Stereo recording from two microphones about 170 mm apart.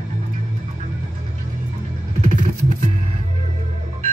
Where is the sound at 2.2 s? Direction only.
45° right (ahead or behind).